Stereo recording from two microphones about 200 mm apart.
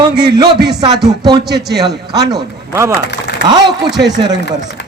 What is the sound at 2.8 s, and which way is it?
Speech, 15° right (ahead or behind).